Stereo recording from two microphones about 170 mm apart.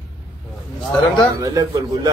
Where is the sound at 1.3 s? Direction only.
20° right (ahead or behind).